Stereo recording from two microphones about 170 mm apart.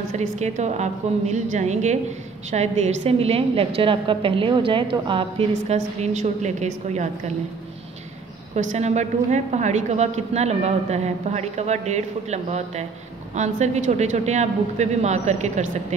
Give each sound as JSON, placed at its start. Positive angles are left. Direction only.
{"t": 0.1, "sound": "a woman's voice", "side_deg": -45}
{"t": 5.5, "sound": "speech", "side_deg": -40}
{"t": 8.5, "sound": "a woman's voice", "side_deg": -40}